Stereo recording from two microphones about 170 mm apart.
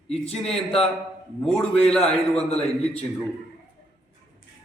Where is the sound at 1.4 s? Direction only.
5° left (ahead or behind).